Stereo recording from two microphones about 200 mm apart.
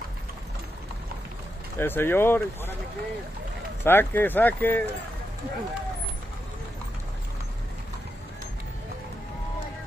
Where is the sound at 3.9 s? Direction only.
10° left (ahead or behind).